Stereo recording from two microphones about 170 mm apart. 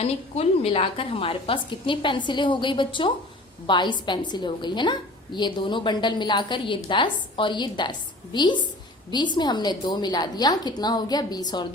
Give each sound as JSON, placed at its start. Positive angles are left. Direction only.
{"t": 0.0, "sound": "a woman's voice", "side_deg": 35}